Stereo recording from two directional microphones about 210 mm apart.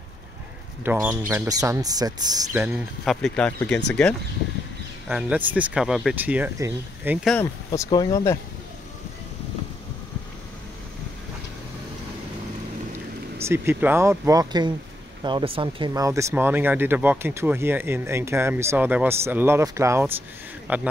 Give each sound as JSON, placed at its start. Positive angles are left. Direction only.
{"t": 0.8, "sound": "speech", "side_deg": -10}
{"t": 2.6, "sound": "speech", "side_deg": -5}
{"t": 5.0, "sound": "speech", "side_deg": -5}
{"t": 7.3, "sound": "speech", "side_deg": 15}
{"t": 13.4, "sound": "speech", "side_deg": -10}